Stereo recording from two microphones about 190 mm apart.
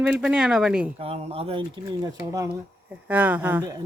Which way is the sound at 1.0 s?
30° right (ahead or behind).